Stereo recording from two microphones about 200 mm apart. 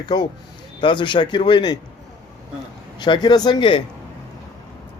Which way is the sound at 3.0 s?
20° left (ahead or behind).